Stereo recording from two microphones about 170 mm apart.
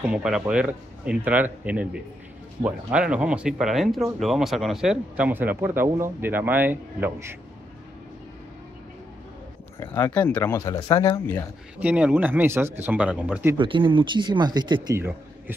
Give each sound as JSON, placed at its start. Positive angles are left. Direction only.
{"t": 0.1, "sound": "speech", "side_deg": -5}
{"t": 9.8, "sound": "speech", "side_deg": 15}
{"t": 11.8, "sound": "speech", "side_deg": -10}
{"t": 13.6, "sound": "speech", "side_deg": -30}
{"t": 15.0, "sound": "speech", "side_deg": -10}